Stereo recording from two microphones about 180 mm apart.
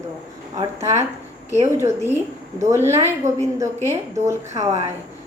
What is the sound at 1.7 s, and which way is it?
A woman's voice, 15° right (ahead or behind).